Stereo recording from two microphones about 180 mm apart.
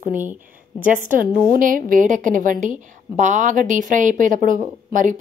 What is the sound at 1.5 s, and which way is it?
A woman's voice, 50° right (ahead or behind).